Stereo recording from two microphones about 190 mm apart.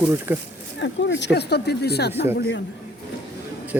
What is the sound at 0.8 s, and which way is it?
Speech, 70° left (ahead or behind).